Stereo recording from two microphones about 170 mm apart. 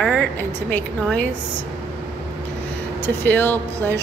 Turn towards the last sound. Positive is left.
turn(degrees=10)  # may be behind; listen again after turning